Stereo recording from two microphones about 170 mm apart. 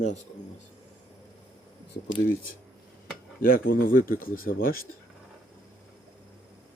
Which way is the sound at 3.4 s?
55° left (ahead or behind).